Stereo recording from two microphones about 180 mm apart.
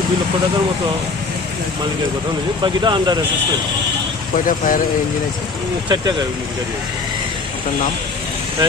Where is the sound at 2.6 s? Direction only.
25° right (ahead or behind).